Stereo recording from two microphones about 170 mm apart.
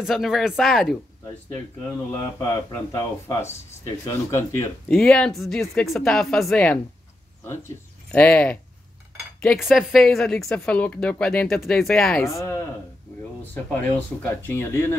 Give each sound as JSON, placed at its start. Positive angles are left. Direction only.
{"t": 0.0, "sound": "speech", "side_deg": 0}
{"t": 2.4, "sound": "speech", "side_deg": 20}
{"t": 4.9, "sound": "speech", "side_deg": 5}
{"t": 8.1, "sound": "speech", "side_deg": 10}
{"t": 12.3, "sound": "speech", "side_deg": 15}